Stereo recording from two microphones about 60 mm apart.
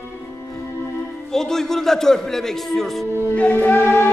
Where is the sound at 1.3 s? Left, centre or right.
Centre.